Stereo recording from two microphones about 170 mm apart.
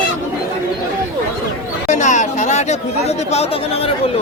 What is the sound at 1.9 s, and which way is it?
Chatter, 45° left (ahead or behind).